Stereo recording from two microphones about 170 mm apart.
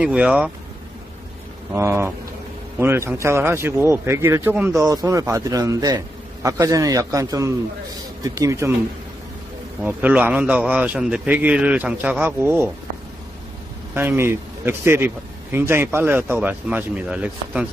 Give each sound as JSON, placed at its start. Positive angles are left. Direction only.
{"t": 0.0, "sound": "speech", "side_deg": -5}
{"t": 1.7, "sound": "speech", "side_deg": -15}
{"t": 9.8, "sound": "speech", "side_deg": -10}
{"t": 13.9, "sound": "speech", "side_deg": -15}